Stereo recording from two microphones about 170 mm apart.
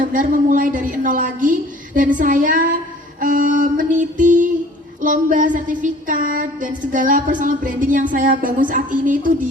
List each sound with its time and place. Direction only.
0.0 s child singing: 50° right (ahead or behind)